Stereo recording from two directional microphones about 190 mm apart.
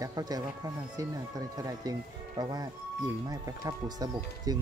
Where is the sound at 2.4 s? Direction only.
20° right (ahead or behind).